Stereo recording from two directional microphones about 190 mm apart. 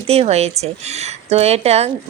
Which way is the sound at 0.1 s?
35° right (ahead or behind).